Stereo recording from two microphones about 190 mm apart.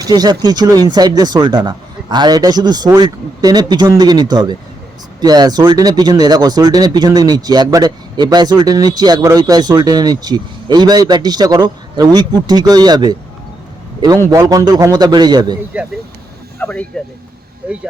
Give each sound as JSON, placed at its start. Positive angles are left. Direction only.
{"t": 0.0, "sound": "speech", "side_deg": -20}
{"t": 14.3, "sound": "speech", "side_deg": -15}
{"t": 15.7, "sound": "speech", "side_deg": -5}
{"t": 16.6, "sound": "speech", "side_deg": 10}